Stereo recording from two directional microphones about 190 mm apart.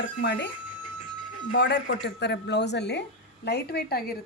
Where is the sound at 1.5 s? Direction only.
60° left (ahead or behind).